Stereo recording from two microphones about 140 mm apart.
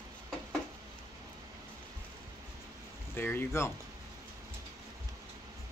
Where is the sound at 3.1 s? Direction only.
15° left (ahead or behind).